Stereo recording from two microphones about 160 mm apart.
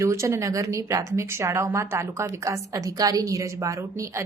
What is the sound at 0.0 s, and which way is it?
A woman's voice, 20° right (ahead or behind).